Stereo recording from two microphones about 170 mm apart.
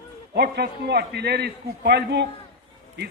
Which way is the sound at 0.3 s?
70° right (ahead or behind).